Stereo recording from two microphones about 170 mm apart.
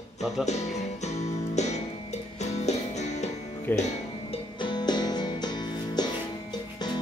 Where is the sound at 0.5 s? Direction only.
40° left (ahead or behind).